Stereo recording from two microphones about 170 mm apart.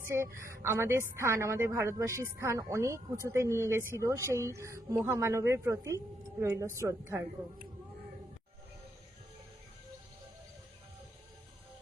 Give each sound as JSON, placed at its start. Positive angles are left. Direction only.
{"t": 0.0, "sound": "a woman's voice", "side_deg": -15}